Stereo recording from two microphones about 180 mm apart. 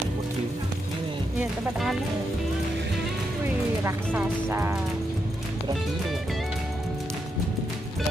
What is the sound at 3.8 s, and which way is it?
Speech, 10° right (ahead or behind).